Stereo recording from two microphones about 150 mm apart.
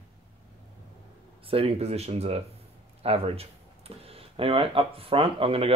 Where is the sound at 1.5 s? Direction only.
40° right (ahead or behind).